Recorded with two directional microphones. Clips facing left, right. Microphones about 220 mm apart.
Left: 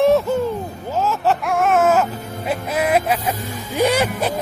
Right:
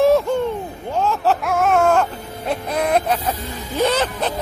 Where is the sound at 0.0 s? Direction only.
Centre (ahead or behind).